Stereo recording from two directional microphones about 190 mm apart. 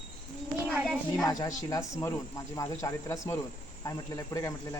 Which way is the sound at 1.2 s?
20° left (ahead or behind).